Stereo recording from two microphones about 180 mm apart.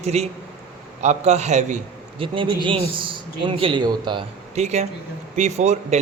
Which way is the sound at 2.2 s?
25° right (ahead or behind).